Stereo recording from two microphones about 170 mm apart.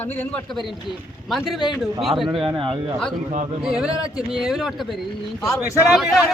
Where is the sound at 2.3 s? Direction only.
30° right (ahead or behind).